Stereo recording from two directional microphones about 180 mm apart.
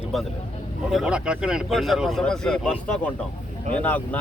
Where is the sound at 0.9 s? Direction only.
5° right (ahead or behind).